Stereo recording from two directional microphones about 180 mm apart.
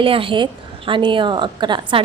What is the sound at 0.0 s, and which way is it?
A woman's voice, 30° right (ahead or behind).